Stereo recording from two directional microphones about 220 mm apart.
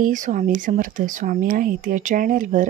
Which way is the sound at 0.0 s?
35° right (ahead or behind).